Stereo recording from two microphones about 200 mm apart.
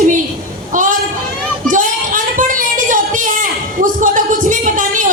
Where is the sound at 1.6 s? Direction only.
40° right (ahead or behind).